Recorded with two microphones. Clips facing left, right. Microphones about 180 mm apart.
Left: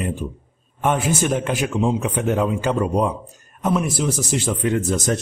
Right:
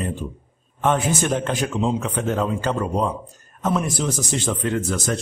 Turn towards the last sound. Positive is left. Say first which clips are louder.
# left 3 dB
turn(degrees=20)  # may be behind; listen again after turning